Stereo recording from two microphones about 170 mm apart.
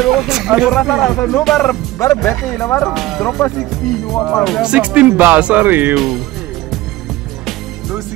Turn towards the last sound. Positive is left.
turn(degrees=0)  # may be behind; listen again after turning